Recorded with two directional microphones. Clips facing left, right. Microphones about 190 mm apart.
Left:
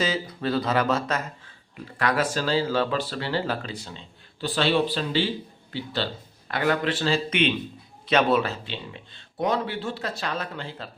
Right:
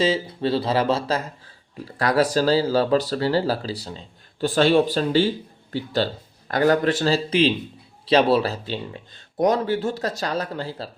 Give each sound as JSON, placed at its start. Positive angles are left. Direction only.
{"t": 0.0, "sound": "speech", "side_deg": -30}